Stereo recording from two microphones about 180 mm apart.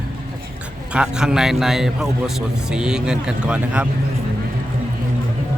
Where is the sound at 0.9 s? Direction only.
5° right (ahead or behind).